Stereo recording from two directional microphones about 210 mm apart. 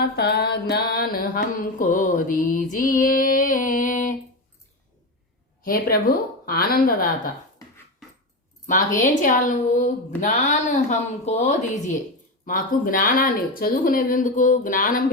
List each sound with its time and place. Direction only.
0.0 s a woman's voice: 50° left (ahead or behind)
5.6 s a woman's voice: 45° left (ahead or behind)
8.6 s speech: 35° left (ahead or behind)